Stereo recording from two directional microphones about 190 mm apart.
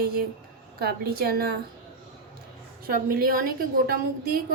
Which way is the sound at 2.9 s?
50° right (ahead or behind).